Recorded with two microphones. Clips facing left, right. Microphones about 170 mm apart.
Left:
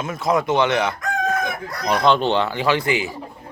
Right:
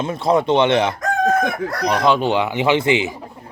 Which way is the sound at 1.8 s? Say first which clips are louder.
Even; 5° right (ahead or behind).